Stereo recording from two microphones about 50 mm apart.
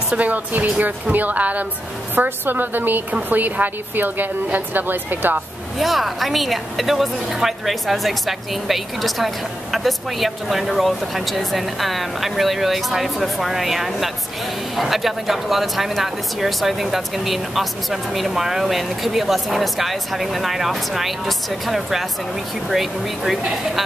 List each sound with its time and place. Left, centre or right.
0.1 s a woman's voice: right
2.1 s a woman's voice: right
5.8 s a woman's voice: centre